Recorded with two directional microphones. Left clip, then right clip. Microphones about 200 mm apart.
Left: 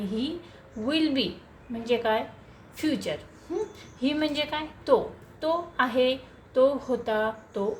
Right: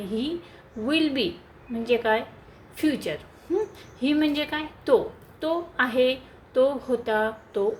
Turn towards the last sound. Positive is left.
turn(degrees=-20)  # may be behind; listen again after turning